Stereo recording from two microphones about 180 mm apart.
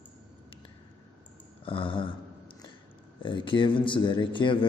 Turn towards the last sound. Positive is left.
turn(degrees=25)  # may be behind; listen again after turning